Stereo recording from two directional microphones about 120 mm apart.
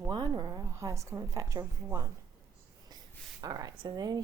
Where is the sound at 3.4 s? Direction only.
30° right (ahead or behind).